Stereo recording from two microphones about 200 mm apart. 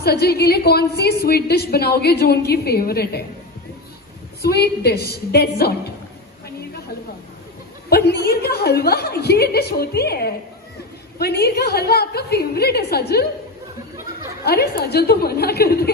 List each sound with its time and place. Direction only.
0.0 s a woman's voice: 50° left (ahead or behind)
4.4 s a woman's voice: 55° left (ahead or behind)
7.9 s a woman's voice: 55° left (ahead or behind)
14.4 s a woman's voice: 50° left (ahead or behind)